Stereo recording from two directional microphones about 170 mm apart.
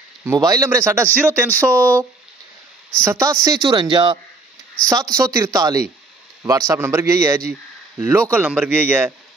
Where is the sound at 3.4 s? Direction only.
25° right (ahead or behind).